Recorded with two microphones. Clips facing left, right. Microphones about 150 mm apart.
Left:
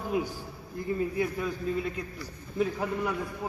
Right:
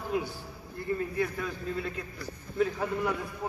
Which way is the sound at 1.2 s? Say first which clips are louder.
Left 2 dB; 15° left (ahead or behind).